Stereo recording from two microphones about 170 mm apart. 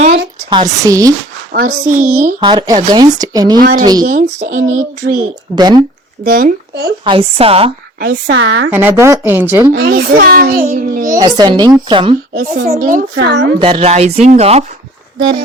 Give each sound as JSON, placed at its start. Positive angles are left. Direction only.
{"t": 0.5, "sound": "speech", "side_deg": -20}
{"t": 1.5, "sound": "speech", "side_deg": -50}
{"t": 2.4, "sound": "speech", "side_deg": -25}
{"t": 3.6, "sound": "a child's voice", "side_deg": -55}
{"t": 5.5, "sound": "speech", "side_deg": -25}
{"t": 6.2, "sound": "a child's voice", "side_deg": -60}
{"t": 7.0, "sound": "speech", "side_deg": -30}
{"t": 7.9, "sound": "speech", "side_deg": -70}
{"t": 8.7, "sound": "speech", "side_deg": -15}
{"t": 9.7, "sound": "a child's voice", "side_deg": -70}
{"t": 11.2, "sound": "speech", "side_deg": -25}
{"t": 12.5, "sound": "speech", "side_deg": -50}
{"t": 13.1, "sound": "speech", "side_deg": -90}
{"t": 13.6, "sound": "speech", "side_deg": -30}